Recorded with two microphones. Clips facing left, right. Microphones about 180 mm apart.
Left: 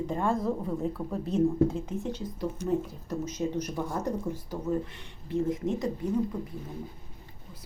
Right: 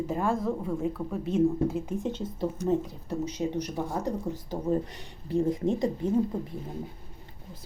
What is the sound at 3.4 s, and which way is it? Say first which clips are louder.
Speech: left 1 dB; 15° right (ahead or behind).